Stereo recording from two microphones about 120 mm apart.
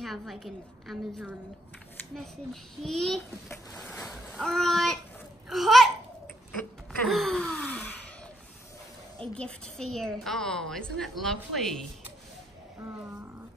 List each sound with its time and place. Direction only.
0.0 s a woman's voice: centre (ahead or behind)
3.7 s boat: 5° left (ahead or behind)
4.4 s a woman's voice: 5° left (ahead or behind)
5.5 s babbling: centre (ahead or behind)
6.6 s a sound: 10° left (ahead or behind)
7.1 s gasp: 5° left (ahead or behind)
9.2 s a woman's voice: 10° left (ahead or behind)
12.8 s speech: 20° right (ahead or behind)